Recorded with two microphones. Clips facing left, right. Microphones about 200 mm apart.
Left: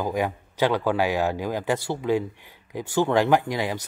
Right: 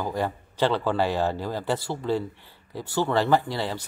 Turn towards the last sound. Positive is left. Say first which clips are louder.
# left 2 dB
turn(degrees=15)  # may be behind; listen again after turning